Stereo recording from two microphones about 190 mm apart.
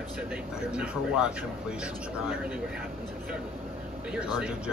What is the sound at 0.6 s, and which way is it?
Speech, 5° right (ahead or behind).